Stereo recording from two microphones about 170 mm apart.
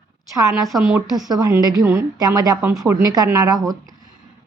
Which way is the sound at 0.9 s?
15° right (ahead or behind).